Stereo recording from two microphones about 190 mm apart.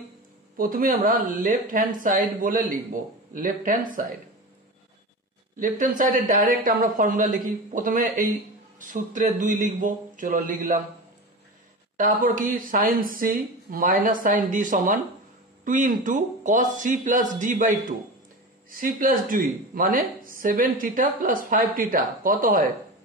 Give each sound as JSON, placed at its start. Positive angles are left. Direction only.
{"t": 0.6, "sound": "speech", "side_deg": -50}
{"t": 5.6, "sound": "speech", "side_deg": -45}
{"t": 12.0, "sound": "speech", "side_deg": -45}